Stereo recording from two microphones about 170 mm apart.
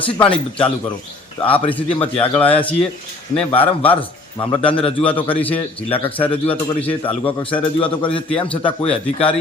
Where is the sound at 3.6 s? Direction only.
30° left (ahead or behind).